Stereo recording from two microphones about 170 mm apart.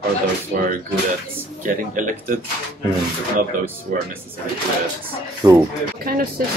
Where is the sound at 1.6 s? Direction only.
50° right (ahead or behind).